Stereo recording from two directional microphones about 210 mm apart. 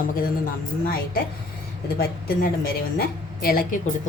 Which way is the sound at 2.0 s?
45° left (ahead or behind).